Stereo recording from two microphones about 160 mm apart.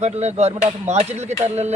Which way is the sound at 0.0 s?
45° right (ahead or behind).